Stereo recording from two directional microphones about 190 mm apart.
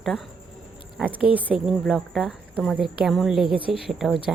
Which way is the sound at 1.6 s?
5° right (ahead or behind).